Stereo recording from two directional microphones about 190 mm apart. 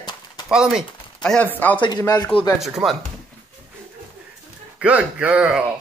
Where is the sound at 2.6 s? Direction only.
Centre (ahead or behind).